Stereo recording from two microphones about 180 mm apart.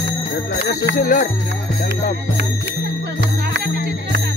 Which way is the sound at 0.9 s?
50° left (ahead or behind).